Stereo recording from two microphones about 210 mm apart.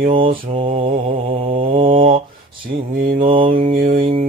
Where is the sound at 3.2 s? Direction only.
25° right (ahead or behind).